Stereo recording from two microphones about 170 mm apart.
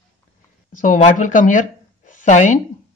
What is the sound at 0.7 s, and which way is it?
Speech, 50° left (ahead or behind).